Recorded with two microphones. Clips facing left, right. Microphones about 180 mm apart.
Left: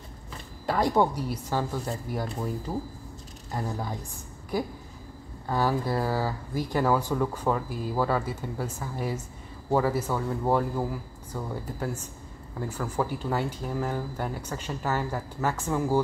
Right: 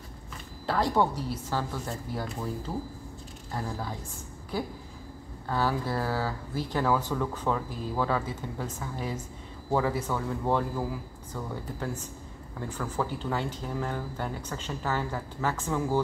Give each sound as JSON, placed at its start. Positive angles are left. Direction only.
{"t": 0.7, "sound": "speech", "side_deg": 15}
{"t": 3.5, "sound": "speech", "side_deg": 20}